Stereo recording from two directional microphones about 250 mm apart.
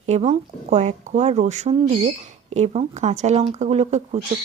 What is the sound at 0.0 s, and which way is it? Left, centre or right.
Speech, right.